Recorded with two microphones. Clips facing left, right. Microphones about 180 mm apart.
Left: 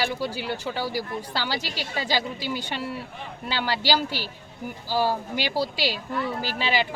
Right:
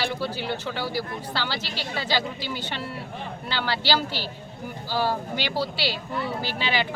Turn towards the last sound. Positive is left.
turn(degrees=40)  # may be behind; listen again after turning